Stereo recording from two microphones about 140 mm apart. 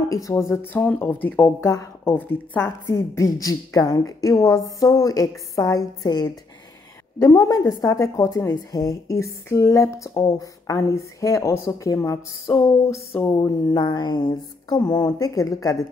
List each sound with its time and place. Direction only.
0.1 s a woman's voice: 25° left (ahead or behind)